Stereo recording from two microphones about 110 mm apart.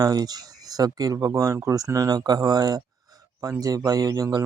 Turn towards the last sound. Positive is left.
turn(degrees=-35)  # may be behind; listen again after turning